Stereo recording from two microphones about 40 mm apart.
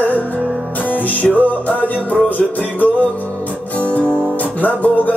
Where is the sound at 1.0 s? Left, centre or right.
Left.